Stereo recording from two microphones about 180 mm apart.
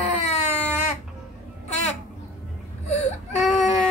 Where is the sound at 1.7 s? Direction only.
40° left (ahead or behind).